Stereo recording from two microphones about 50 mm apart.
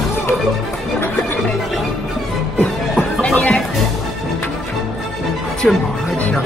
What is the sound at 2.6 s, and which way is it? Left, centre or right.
Music, left.